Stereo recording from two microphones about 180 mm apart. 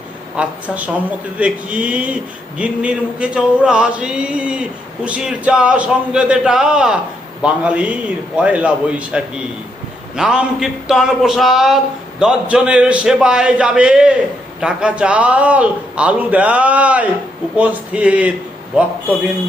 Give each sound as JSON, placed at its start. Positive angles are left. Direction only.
{"t": 0.3, "sound": "a man's voice", "side_deg": -10}